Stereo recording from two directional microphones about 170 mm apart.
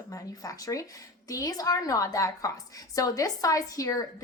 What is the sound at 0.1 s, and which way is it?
A woman's voice, 20° left (ahead or behind).